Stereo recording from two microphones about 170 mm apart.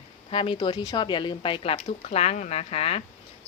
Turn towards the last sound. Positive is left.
turn(degrees=35)  # may be behind; listen again after turning